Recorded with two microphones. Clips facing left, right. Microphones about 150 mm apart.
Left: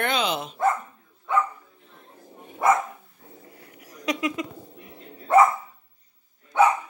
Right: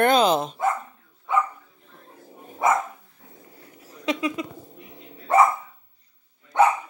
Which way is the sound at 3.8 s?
25° right (ahead or behind).